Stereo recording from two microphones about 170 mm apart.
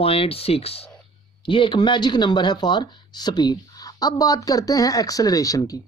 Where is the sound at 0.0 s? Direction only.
35° left (ahead or behind).